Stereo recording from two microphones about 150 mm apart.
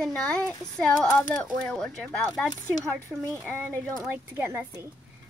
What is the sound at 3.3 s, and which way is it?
A woman's voice, 15° right (ahead or behind).